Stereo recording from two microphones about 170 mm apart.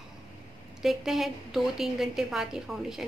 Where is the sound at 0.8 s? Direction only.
Centre (ahead or behind).